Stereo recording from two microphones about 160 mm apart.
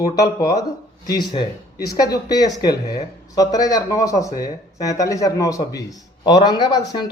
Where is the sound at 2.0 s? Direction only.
25° left (ahead or behind).